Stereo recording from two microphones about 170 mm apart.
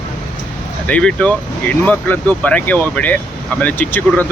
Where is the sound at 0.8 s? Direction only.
5° left (ahead or behind).